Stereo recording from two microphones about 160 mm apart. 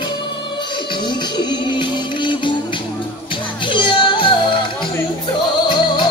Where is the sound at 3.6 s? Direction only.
30° left (ahead or behind).